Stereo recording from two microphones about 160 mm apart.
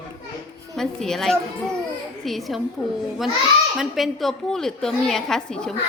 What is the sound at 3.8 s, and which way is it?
A woman's voice, centre (ahead or behind).